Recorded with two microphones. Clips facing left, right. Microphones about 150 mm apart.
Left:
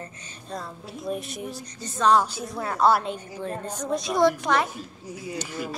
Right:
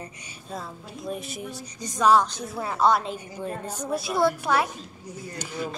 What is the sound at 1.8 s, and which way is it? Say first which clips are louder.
Speech: right 1 dB; 10° right (ahead or behind).